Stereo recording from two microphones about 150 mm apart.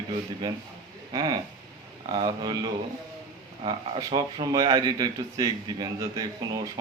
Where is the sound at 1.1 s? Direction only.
30° right (ahead or behind).